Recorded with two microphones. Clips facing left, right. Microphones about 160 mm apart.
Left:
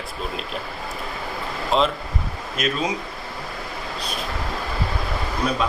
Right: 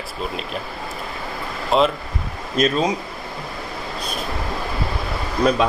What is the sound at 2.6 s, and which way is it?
Speech, 40° right (ahead or behind).